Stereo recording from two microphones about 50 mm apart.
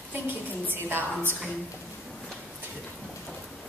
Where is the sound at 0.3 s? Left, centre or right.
Right.